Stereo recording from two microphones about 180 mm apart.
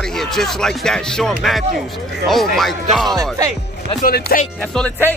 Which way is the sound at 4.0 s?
55° left (ahead or behind).